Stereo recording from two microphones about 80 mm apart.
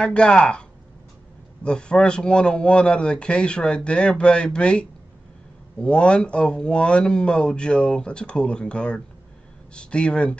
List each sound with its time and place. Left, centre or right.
0.0 s a man's voice: centre